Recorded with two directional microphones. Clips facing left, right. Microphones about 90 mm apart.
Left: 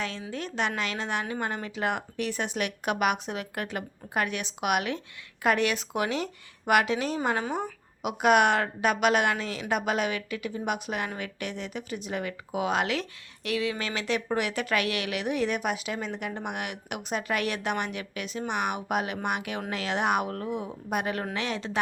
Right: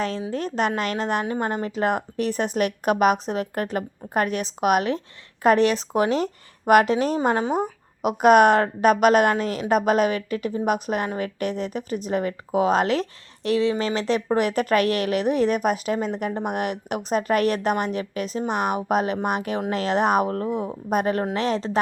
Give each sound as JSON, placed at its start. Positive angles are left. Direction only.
{"t": 0.0, "sound": "speech", "side_deg": -35}